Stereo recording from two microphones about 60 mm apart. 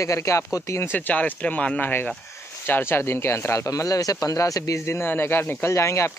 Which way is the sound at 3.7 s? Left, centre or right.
Left.